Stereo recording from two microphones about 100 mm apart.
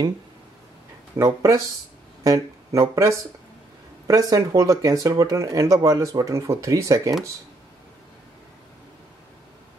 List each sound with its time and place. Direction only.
1.1 s speech: 30° right (ahead or behind)